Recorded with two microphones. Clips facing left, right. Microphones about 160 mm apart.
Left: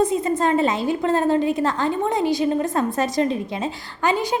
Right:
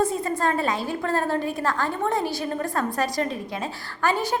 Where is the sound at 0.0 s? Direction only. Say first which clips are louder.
Left 4 dB; 20° left (ahead or behind).